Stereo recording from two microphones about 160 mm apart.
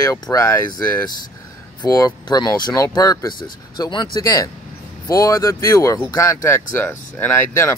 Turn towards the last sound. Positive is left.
turn(degrees=15)  # may be behind; listen again after turning